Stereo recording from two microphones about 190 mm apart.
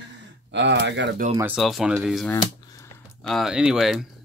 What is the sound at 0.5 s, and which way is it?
Speech, 65° right (ahead or behind).